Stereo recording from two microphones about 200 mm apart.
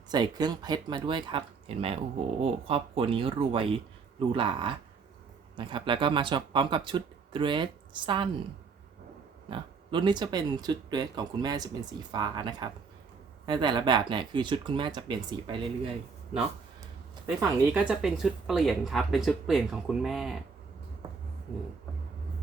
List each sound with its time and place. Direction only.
0.1 s speech: 20° right (ahead or behind)
9.5 s speech: 25° right (ahead or behind)
17.7 s speech: 5° right (ahead or behind)